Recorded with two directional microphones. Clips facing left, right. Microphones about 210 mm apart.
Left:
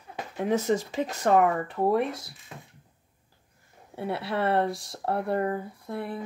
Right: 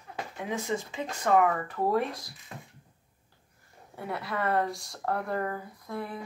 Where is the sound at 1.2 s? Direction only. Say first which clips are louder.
Left 2 dB; 25° left (ahead or behind).